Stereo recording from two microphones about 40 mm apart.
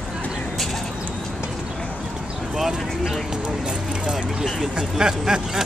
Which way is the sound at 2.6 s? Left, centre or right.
Centre.